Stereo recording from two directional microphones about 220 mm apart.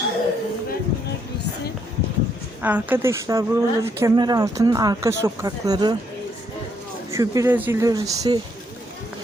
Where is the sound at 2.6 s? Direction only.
10° right (ahead or behind).